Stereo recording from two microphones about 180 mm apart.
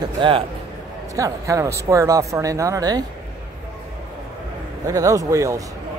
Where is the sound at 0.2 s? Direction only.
25° right (ahead or behind).